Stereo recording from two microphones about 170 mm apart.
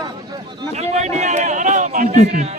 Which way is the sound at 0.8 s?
40° right (ahead or behind).